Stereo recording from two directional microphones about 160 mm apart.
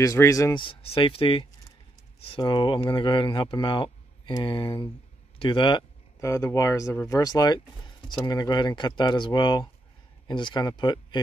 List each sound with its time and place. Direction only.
0.0 s speech: 20° left (ahead or behind)
0.7 s speech: 35° left (ahead or behind)
6.2 s speech: 20° left (ahead or behind)